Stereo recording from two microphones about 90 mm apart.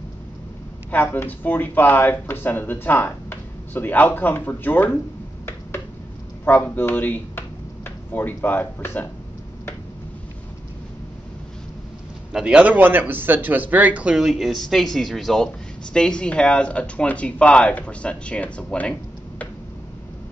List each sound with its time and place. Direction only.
0.9 s speech: 20° left (ahead or behind)
6.4 s speech: 20° left (ahead or behind)
12.3 s speech: 10° right (ahead or behind); by 19.4 s 15° left (ahead or behind)